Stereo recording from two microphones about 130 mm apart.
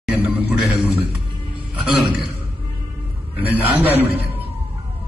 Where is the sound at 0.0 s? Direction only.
15° right (ahead or behind).